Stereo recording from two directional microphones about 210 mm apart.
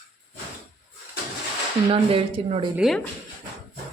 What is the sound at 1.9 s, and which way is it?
Speech, 25° right (ahead or behind).